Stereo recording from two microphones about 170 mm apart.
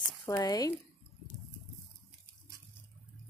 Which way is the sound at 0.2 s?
20° left (ahead or behind).